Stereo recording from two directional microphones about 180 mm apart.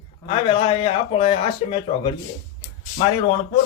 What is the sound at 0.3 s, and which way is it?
Speech, 30° left (ahead or behind).